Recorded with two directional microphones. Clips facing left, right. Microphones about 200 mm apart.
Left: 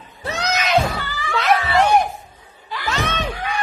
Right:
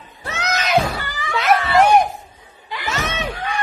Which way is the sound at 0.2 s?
35° left (ahead or behind).